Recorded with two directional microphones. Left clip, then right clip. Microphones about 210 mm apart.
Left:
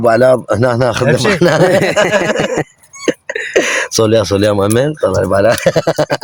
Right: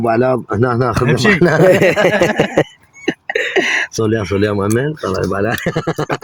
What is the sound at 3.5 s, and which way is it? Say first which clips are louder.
Speech: left 5 dB; 40° left (ahead or behind).